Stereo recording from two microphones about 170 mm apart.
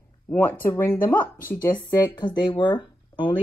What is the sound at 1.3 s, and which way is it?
Speech, 55° left (ahead or behind).